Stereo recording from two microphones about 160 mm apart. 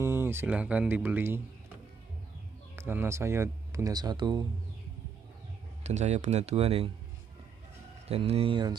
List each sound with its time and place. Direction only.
0.0 s speech: 15° right (ahead or behind)
2.7 s speech: 15° right (ahead or behind)
5.9 s speech: 45° right (ahead or behind)
8.1 s speech: 35° right (ahead or behind)